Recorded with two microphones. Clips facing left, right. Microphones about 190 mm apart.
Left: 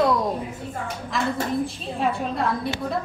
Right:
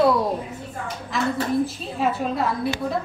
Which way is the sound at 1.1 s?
Centre (ahead or behind).